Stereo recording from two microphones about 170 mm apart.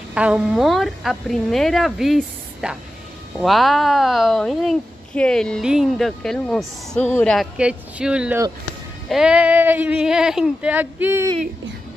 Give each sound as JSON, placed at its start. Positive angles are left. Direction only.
{"t": 0.1, "sound": "speech", "side_deg": -5}
{"t": 7.3, "sound": "speech", "side_deg": -5}